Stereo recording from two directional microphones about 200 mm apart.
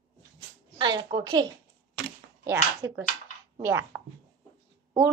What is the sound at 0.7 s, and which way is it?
Speech, 20° right (ahead or behind).